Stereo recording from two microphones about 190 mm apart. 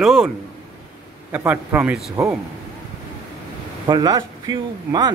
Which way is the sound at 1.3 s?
10° right (ahead or behind).